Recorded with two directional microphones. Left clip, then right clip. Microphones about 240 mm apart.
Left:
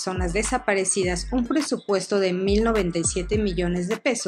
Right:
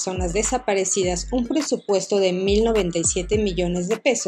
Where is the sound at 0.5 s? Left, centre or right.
Centre.